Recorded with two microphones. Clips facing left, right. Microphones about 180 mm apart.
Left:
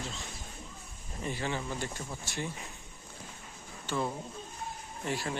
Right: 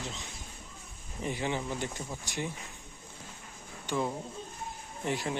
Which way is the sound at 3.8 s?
15° right (ahead or behind).